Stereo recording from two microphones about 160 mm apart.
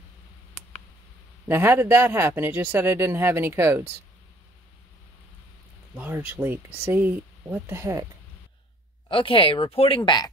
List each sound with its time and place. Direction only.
1.5 s speech: 15° right (ahead or behind)
5.9 s speech: 15° right (ahead or behind)
9.1 s speech: 35° left (ahead or behind)